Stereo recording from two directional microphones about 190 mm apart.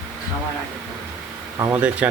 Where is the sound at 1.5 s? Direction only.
20° right (ahead or behind).